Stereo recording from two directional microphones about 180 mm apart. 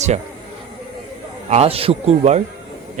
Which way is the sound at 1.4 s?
35° right (ahead or behind).